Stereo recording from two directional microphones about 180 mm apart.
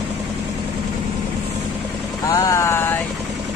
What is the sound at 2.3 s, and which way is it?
Speech, 20° left (ahead or behind).